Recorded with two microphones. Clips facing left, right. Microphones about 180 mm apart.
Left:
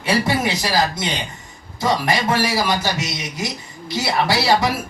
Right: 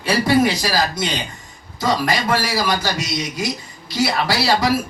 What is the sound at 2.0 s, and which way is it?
A man's voice, 25° left (ahead or behind).